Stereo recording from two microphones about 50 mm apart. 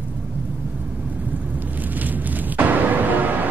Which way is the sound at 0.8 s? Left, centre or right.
Right.